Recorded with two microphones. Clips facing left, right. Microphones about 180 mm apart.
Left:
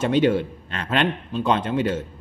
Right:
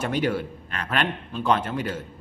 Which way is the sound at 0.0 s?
20° left (ahead or behind).